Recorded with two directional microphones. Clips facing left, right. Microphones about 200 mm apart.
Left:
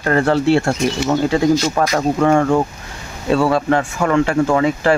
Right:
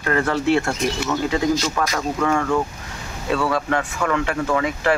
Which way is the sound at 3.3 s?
30° left (ahead or behind).